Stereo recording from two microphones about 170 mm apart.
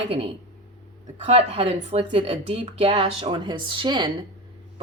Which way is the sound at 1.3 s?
35° right (ahead or behind).